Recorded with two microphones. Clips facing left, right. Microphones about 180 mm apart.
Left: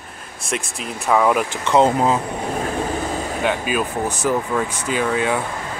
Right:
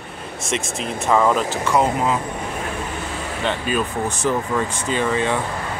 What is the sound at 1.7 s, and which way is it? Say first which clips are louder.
Speech: left 4 dB; 25° left (ahead or behind).